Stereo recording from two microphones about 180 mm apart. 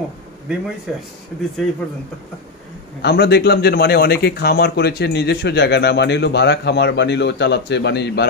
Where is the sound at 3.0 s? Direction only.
65° left (ahead or behind).